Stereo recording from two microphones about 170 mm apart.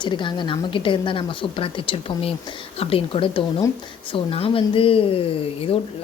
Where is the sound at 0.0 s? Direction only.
30° left (ahead or behind).